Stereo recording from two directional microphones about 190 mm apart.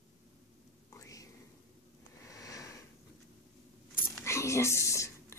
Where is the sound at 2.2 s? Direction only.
15° left (ahead or behind).